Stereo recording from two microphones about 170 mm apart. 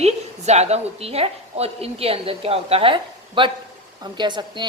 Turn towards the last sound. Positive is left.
turn(degrees=-25)  # may be behind; listen again after turning